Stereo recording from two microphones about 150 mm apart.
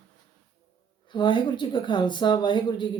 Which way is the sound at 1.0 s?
30° left (ahead or behind).